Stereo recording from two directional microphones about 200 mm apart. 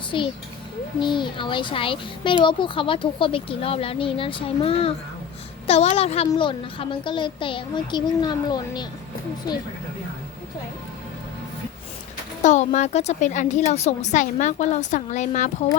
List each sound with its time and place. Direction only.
0.1 s a child's voice: 25° left (ahead or behind)
12.4 s a woman's voice: 35° left (ahead or behind)